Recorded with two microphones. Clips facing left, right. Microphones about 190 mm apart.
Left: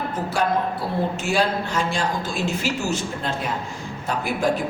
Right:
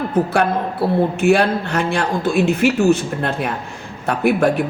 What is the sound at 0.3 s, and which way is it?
A man's voice, 60° right (ahead or behind).